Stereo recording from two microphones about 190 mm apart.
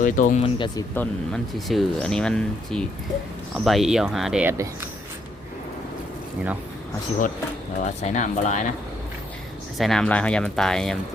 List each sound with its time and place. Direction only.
0.0 s speech: 45° left (ahead or behind)
0.4 s speech: 25° left (ahead or behind)
0.9 s speech: centre (ahead or behind); by 4.9 s 15° right (ahead or behind)
7.8 s speech: 40° left (ahead or behind)
9.7 s speech: centre (ahead or behind)